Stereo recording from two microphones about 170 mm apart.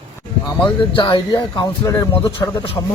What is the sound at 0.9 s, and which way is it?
Speech, 25° left (ahead or behind).